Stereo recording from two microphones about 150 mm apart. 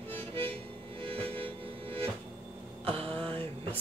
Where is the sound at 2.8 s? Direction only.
40° right (ahead or behind).